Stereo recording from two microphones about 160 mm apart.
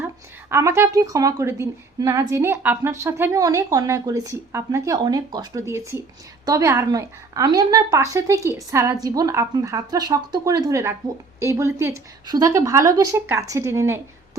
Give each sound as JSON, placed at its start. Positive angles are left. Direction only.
{"t": 0.5, "sound": "speech", "side_deg": -15}